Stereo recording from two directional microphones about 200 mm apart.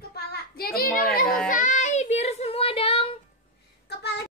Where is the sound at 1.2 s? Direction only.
5° left (ahead or behind).